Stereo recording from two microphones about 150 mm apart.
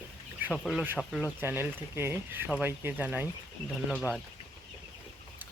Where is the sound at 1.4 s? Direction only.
15° right (ahead or behind).